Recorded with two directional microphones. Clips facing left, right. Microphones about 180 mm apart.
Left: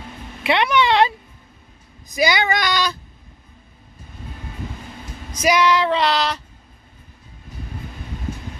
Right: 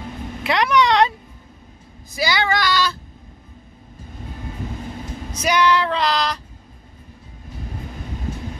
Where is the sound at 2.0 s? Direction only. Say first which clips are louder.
Left 2 dB; 20° left (ahead or behind).